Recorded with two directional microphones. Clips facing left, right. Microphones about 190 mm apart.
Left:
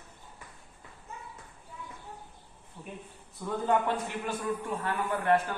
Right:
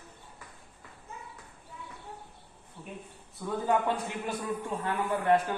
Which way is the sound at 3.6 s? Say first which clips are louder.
Even; 15° right (ahead or behind).